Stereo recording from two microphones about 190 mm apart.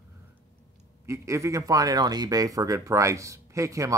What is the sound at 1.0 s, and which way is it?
Speech, 15° right (ahead or behind).